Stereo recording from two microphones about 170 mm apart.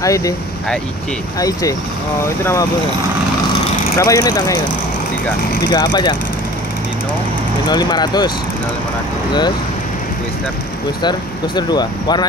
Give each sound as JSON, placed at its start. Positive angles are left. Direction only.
{"t": 0.0, "sound": "speech", "side_deg": 20}
{"t": 1.4, "sound": "speech", "side_deg": 20}
{"t": 4.0, "sound": "speech", "side_deg": 20}
{"t": 5.7, "sound": "speech", "side_deg": 25}
{"t": 7.7, "sound": "speech", "side_deg": 25}
{"t": 11.0, "sound": "speech", "side_deg": 25}